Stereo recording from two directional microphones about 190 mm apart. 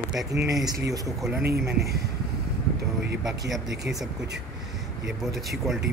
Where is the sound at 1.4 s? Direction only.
55° right (ahead or behind).